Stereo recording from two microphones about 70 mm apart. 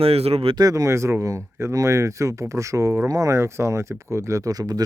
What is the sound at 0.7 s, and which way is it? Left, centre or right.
Speech, right.